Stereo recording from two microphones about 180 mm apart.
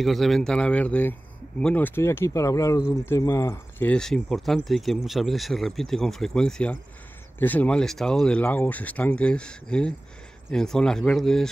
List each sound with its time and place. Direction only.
0.0 s speech: centre (ahead or behind)